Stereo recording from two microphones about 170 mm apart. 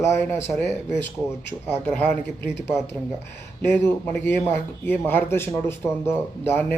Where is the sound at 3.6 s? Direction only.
10° left (ahead or behind).